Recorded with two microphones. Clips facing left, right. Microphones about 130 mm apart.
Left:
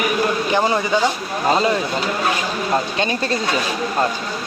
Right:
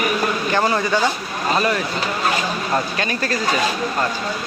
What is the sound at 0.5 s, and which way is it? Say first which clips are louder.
Speech: even; 15° left (ahead or behind).